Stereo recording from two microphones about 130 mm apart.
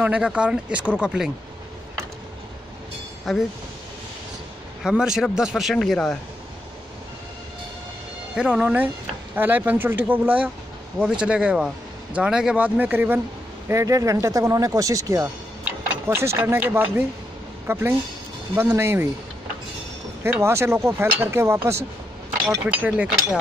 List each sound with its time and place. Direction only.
0.0 s speech: 10° right (ahead or behind)
3.3 s speech: centre (ahead or behind)
4.8 s speech: 5° right (ahead or behind)
8.4 s speech: 5° right (ahead or behind)
13.7 s speech: 25° right (ahead or behind)
20.2 s speech: 20° right (ahead or behind)